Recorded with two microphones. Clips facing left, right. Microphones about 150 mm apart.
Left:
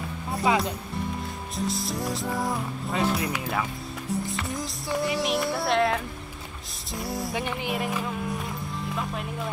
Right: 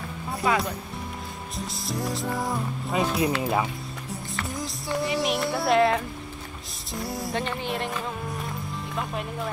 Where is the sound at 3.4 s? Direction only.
20° right (ahead or behind).